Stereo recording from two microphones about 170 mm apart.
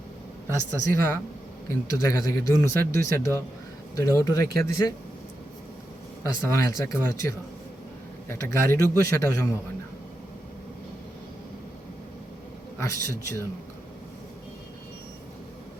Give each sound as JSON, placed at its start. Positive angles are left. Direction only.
{"t": 0.8, "sound": "a man's voice", "side_deg": 15}
{"t": 6.2, "sound": "a man's voice", "side_deg": 15}
{"t": 12.8, "sound": "a man's voice", "side_deg": 15}